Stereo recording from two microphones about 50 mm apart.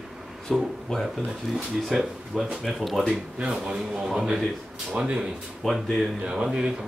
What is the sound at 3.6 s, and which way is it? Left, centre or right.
Speech, right.